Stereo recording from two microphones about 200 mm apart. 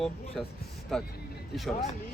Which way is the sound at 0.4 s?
Centre (ahead or behind).